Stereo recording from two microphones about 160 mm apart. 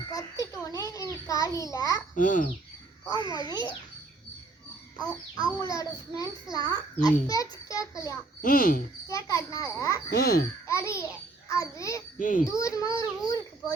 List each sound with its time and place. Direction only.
0.1 s a sound: 20° left (ahead or behind)
2.1 s speech: 55° left (ahead or behind)
3.2 s a child's voice: 25° left (ahead or behind)
5.5 s a child's voice: 20° left (ahead or behind)
8.4 s speech: 65° left (ahead or behind)
9.0 s a child's voice: 20° left (ahead or behind)
10.1 s speech: 70° left (ahead or behind)
10.7 s a child's voice: 20° left (ahead or behind)